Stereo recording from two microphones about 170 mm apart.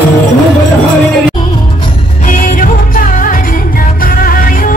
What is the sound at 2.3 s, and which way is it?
Music, 55° left (ahead or behind).